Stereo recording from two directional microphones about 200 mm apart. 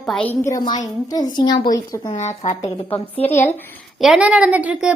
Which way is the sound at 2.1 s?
35° left (ahead or behind).